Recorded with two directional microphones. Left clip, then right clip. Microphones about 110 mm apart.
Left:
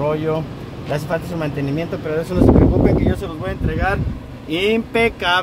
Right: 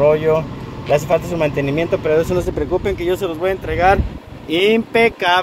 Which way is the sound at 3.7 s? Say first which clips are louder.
Right 7 dB; 40° right (ahead or behind).